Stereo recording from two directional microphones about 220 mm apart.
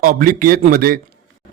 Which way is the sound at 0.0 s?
40° right (ahead or behind).